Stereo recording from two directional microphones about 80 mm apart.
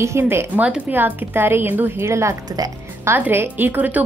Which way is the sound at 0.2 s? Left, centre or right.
Right.